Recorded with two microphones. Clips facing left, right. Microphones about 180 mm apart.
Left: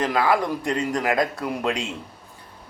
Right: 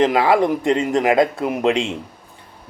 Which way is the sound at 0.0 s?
25° right (ahead or behind).